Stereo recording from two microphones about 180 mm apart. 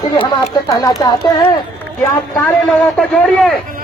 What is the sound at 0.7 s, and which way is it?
Speech, 20° left (ahead or behind).